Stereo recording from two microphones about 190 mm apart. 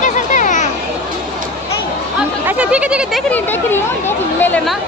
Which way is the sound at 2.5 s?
5° right (ahead or behind).